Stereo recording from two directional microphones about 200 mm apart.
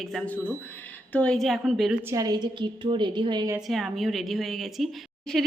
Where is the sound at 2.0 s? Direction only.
15° right (ahead or behind).